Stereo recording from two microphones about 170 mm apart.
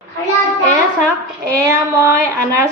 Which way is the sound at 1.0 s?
15° right (ahead or behind).